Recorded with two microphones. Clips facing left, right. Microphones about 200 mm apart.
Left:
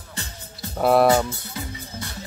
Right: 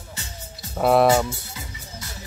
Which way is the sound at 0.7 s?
Centre (ahead or behind).